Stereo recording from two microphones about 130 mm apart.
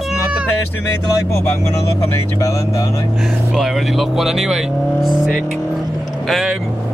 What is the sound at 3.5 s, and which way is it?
Speech, centre (ahead or behind).